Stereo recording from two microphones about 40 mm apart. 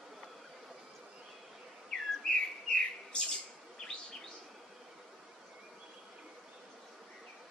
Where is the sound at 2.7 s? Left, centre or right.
Left.